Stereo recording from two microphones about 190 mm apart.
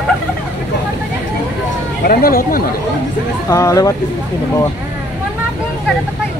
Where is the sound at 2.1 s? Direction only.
50° left (ahead or behind).